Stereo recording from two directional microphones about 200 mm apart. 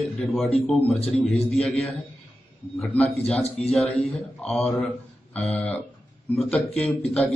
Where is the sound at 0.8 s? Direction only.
30° left (ahead or behind).